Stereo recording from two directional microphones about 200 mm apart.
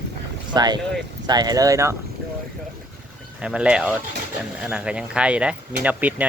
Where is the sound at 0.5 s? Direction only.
20° right (ahead or behind).